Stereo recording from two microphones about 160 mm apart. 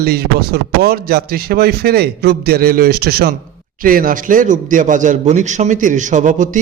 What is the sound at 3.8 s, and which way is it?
A man's voice, 60° right (ahead or behind).